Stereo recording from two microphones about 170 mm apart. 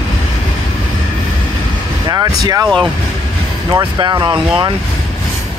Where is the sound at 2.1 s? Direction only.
20° right (ahead or behind).